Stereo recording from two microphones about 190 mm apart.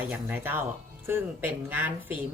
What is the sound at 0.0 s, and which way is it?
A woman's voice, 10° right (ahead or behind).